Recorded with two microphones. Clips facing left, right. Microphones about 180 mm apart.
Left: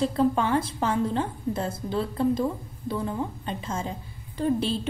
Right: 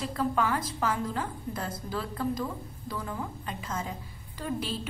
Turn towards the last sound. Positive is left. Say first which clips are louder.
# left 8 dB
turn(degrees=30)  # may be behind; listen again after turning